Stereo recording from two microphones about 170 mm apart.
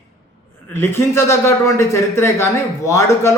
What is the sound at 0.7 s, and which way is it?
A man's voice, 15° left (ahead or behind).